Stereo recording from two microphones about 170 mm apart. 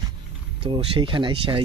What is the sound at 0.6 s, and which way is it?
Speech, 30° right (ahead or behind).